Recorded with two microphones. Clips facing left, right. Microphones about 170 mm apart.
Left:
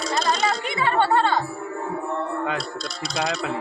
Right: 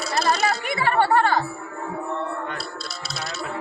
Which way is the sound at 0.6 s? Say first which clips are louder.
Even; 25° left (ahead or behind).